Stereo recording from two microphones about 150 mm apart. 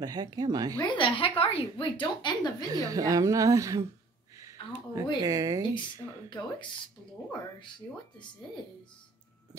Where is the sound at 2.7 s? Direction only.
25° right (ahead or behind).